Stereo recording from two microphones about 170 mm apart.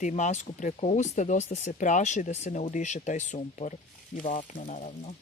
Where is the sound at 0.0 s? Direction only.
45° left (ahead or behind).